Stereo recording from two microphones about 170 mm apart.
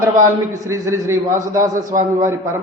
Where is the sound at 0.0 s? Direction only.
15° right (ahead or behind).